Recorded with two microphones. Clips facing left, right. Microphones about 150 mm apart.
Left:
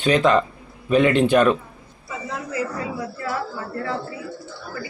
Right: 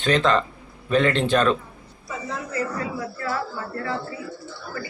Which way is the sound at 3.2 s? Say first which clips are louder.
Even; 20° left (ahead or behind).